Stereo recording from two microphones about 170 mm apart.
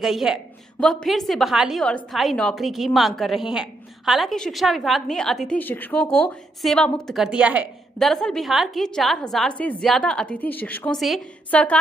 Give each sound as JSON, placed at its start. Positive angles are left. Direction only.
{"t": 0.0, "sound": "a woman's voice", "side_deg": -5}